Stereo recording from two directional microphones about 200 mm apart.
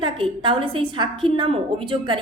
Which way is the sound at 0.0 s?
25° right (ahead or behind).